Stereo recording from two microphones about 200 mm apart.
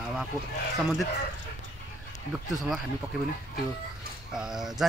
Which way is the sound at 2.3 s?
Centre (ahead or behind).